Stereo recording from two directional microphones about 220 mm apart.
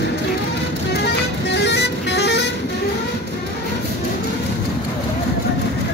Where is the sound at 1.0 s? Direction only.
50° left (ahead or behind).